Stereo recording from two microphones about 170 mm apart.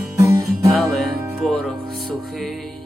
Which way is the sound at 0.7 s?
Centre (ahead or behind).